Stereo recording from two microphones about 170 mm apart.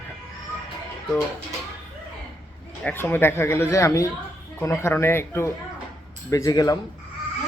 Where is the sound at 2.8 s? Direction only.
10° left (ahead or behind).